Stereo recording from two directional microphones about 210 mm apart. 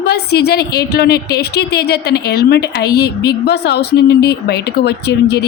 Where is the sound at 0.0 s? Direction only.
50° left (ahead or behind).